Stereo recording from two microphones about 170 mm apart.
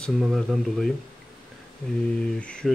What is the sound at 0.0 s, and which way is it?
Speech, centre (ahead or behind).